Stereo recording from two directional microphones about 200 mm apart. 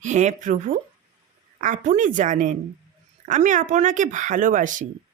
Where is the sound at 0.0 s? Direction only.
35° right (ahead or behind).